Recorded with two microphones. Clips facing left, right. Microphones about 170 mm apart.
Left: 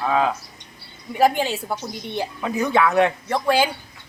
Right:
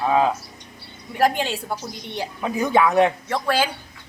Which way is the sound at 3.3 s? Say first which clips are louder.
Left 2 dB; 15° left (ahead or behind).